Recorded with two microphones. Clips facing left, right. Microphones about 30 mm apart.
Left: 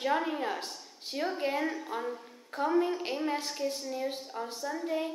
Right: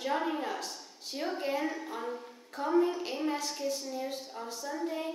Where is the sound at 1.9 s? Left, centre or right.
Centre.